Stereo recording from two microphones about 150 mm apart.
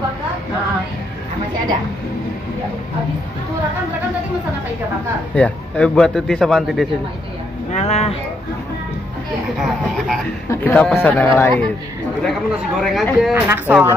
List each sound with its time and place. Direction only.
5.3 s a man's voice: 5° left (ahead or behind)
7.7 s speech: 45° left (ahead or behind)
10.5 s a man's voice: 10° left (ahead or behind)
12.2 s a man's voice: centre (ahead or behind)